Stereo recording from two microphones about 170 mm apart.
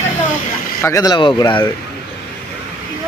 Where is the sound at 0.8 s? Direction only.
20° left (ahead or behind).